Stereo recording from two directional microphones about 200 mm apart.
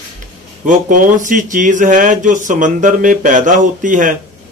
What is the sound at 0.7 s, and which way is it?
Speech, 40° right (ahead or behind).